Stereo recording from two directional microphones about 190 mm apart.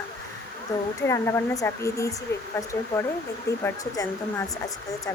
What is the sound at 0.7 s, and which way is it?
Speech, 15° left (ahead or behind).